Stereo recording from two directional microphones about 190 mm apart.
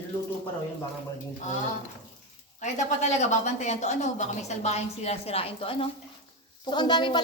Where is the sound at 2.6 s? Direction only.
40° left (ahead or behind).